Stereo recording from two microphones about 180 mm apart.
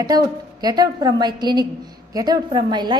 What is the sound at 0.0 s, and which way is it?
A woman's voice, 20° right (ahead or behind).